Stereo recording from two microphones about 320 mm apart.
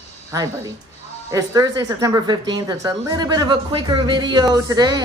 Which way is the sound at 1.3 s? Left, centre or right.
Centre.